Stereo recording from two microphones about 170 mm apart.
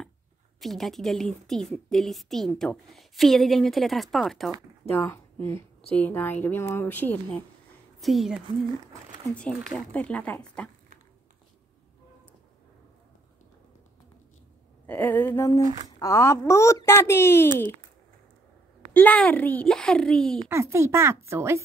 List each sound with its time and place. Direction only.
0.6 s a woman's voice: centre (ahead or behind)
5.0 s a woman's voice: 15° left (ahead or behind)
8.0 s a woman's voice: centre (ahead or behind)
14.9 s a woman's voice: 10° left (ahead or behind)
18.9 s a woman's voice: 10° left (ahead or behind)
20.4 s speech: 15° right (ahead or behind)